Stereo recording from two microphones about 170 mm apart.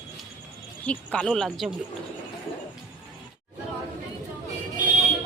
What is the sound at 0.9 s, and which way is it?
Speech, 5° left (ahead or behind).